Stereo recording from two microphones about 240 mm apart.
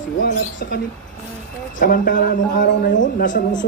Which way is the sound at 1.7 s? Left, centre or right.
Left.